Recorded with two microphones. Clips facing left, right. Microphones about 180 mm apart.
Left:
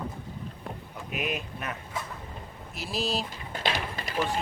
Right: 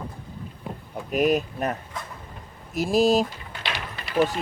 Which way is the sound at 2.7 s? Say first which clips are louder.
Right 12 dB; 45° right (ahead or behind).